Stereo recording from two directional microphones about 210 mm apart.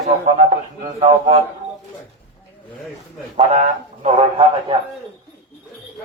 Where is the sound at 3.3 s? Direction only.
30° right (ahead or behind).